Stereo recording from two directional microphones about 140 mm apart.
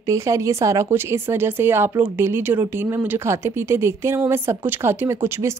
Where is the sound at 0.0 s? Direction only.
20° right (ahead or behind).